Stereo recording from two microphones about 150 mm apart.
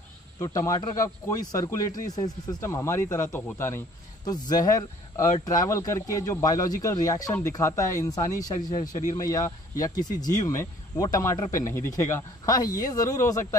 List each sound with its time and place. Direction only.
0.4 s speech: 20° left (ahead or behind)
4.3 s speech: 25° left (ahead or behind)